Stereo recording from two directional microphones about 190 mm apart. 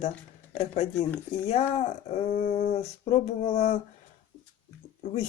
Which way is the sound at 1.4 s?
35° left (ahead or behind).